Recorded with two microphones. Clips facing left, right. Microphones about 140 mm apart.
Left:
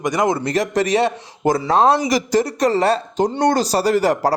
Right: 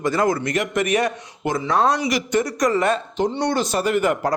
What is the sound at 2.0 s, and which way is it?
Speech, 35° left (ahead or behind).